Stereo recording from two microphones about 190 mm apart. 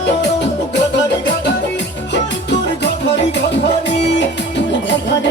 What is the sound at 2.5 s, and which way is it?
Music, 65° left (ahead or behind).